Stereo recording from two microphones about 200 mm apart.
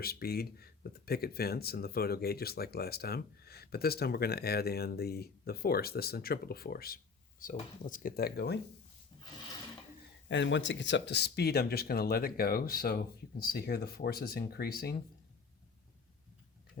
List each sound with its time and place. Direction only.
0.0 s speech: 50° left (ahead or behind)
10.2 s speech: 65° left (ahead or behind)